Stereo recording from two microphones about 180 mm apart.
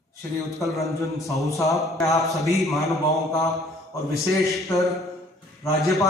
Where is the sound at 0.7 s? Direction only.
15° left (ahead or behind).